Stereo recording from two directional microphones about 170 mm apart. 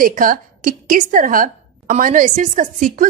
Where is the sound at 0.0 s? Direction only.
55° right (ahead or behind).